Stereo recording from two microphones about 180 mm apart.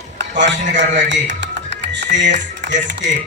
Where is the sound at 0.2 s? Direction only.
85° right.